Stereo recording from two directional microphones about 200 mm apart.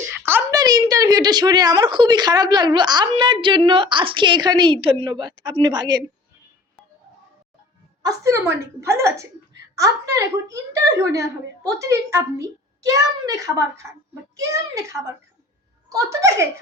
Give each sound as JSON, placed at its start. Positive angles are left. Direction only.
{"t": 0.1, "sound": "a woman's voice", "side_deg": -10}
{"t": 8.0, "sound": "a woman's voice", "side_deg": -15}